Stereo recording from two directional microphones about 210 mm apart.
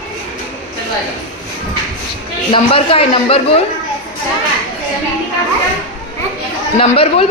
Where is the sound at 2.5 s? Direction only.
25° left (ahead or behind).